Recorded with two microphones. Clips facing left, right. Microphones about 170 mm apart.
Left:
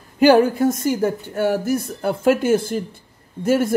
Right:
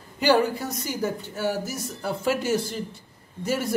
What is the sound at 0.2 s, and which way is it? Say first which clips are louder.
Speech: left 8 dB; 50° left (ahead or behind).